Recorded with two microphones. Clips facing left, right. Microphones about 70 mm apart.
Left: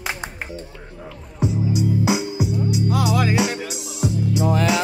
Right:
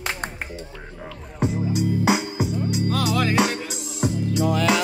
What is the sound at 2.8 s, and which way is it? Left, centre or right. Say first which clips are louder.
Music: left 2 dB; centre.